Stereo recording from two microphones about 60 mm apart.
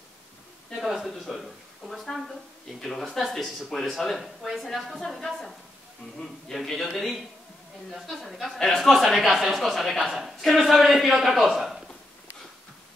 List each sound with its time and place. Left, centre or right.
0.7 s speech: centre